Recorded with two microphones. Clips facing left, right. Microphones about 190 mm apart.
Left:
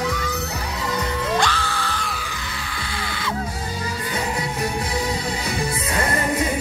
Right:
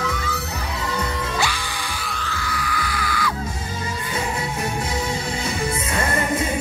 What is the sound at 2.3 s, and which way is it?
Music, 25° left (ahead or behind).